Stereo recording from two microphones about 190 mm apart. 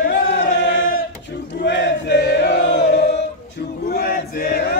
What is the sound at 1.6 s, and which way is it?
Chant, 70° left (ahead or behind).